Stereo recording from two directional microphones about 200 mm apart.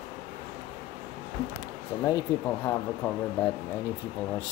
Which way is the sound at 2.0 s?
15° left (ahead or behind).